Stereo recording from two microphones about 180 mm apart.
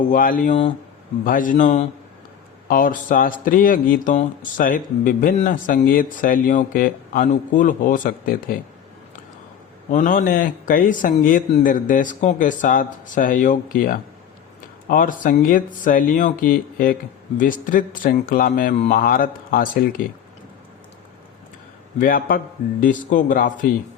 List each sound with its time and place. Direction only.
0.1 s a man's voice: 50° left (ahead or behind)
9.9 s a man's voice: 45° left (ahead or behind)
22.0 s a man's voice: 55° left (ahead or behind)